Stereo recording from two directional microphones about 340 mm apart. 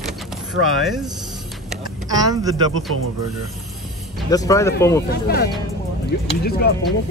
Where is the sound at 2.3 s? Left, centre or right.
Centre.